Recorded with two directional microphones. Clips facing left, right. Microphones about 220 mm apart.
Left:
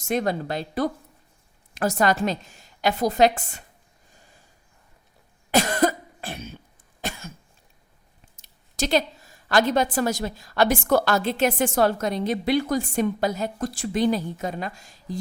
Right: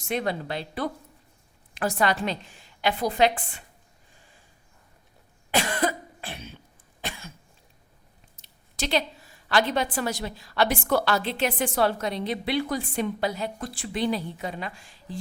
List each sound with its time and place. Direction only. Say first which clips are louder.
0.0 s a woman's voice: left 4 dB; 45° left (ahead or behind)
4.1 s a sound: left 3 dB; 40° left (ahead or behind)
5.5 s cough: left 5 dB; 40° left (ahead or behind)
8.4 s a woman's voice: left 5 dB; 45° left (ahead or behind)